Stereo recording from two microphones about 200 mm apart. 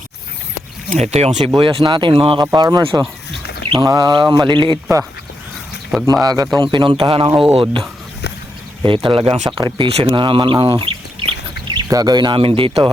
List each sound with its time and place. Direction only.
0.9 s speech: 35° right (ahead or behind)
5.9 s speech: centre (ahead or behind)
6.2 s speech: 20° right (ahead or behind)
9.0 s speech: 25° right (ahead or behind)